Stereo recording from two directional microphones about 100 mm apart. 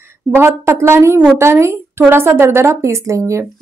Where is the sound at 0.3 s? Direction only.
25° right (ahead or behind).